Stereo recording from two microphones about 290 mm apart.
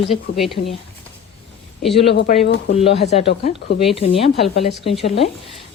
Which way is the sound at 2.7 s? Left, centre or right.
Centre.